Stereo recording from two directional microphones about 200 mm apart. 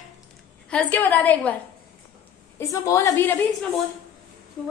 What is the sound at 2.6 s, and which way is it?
A woman's voice, 15° left (ahead or behind).